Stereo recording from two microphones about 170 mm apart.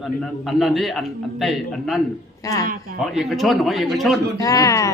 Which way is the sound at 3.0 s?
Centre (ahead or behind).